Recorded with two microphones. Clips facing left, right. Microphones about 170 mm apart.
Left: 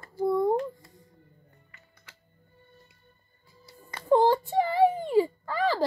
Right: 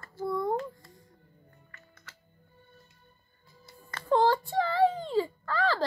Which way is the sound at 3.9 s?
15° left (ahead or behind).